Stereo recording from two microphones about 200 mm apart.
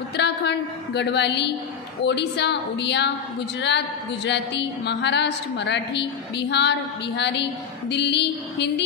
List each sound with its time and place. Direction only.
0.2 s a woman's voice: 60° left (ahead or behind)